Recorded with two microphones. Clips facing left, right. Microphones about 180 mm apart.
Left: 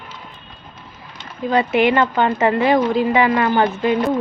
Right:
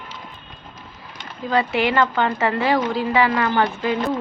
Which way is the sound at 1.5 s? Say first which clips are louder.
Left 4 dB; 20° left (ahead or behind).